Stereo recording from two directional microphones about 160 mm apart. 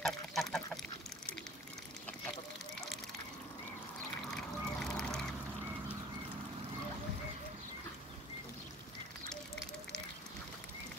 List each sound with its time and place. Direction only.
0.0 s duck: centre (ahead or behind)
4.3 s duck: 5° left (ahead or behind)